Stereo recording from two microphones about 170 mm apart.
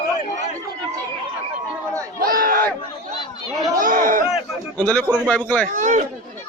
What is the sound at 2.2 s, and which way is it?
Speech, 60° right (ahead or behind).